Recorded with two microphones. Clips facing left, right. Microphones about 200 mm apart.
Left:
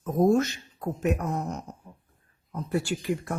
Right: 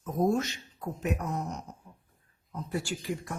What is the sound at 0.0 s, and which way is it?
Speech, 50° left (ahead or behind).